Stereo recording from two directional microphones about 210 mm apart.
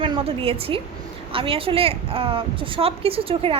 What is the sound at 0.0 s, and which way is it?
A woman's voice, 25° right (ahead or behind).